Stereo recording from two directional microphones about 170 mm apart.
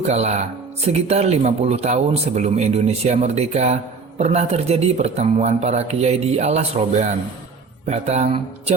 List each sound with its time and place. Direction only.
0.0 s speech: 40° right (ahead or behind)